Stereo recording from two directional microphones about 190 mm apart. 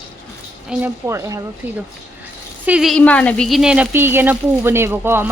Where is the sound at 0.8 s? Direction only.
15° right (ahead or behind).